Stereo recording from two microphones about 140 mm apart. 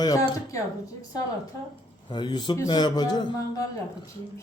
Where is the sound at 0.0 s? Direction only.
25° left (ahead or behind).